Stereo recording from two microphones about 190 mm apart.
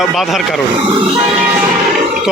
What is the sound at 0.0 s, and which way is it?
Speech, centre (ahead or behind).